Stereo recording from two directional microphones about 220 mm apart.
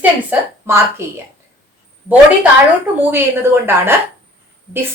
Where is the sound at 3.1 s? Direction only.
10° right (ahead or behind).